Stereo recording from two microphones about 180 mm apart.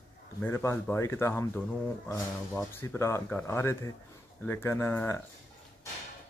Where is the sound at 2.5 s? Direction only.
10° left (ahead or behind).